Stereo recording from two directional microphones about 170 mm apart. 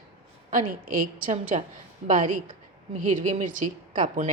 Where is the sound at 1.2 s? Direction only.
50° right (ahead or behind).